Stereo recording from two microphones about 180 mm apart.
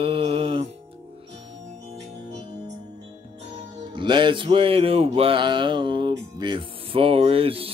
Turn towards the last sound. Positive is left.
turn(degrees=-30)  # may be behind; listen again after turning